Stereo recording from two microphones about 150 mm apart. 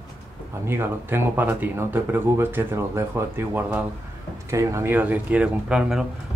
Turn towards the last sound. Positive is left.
turn(degrees=-5)  # may be behind; listen again after turning